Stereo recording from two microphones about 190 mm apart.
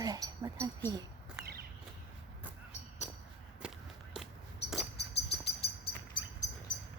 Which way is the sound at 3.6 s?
5° right (ahead or behind).